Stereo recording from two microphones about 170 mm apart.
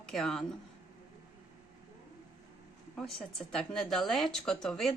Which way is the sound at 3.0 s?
5° left (ahead or behind).